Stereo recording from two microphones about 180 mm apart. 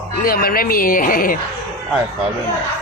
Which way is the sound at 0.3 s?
55° left (ahead or behind).